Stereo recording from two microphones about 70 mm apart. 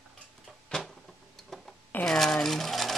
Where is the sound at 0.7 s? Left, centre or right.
Centre.